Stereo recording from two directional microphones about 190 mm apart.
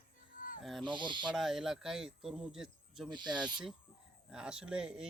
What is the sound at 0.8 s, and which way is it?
Speech, 25° right (ahead or behind).